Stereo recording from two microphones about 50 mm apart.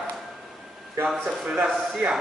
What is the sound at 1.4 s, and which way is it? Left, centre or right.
Speech, right.